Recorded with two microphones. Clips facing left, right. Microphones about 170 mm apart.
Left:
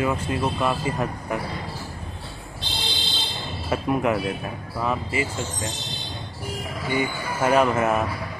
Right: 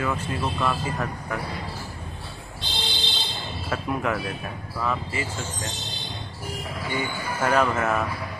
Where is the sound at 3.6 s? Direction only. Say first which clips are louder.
Left 4 dB; 20° left (ahead or behind).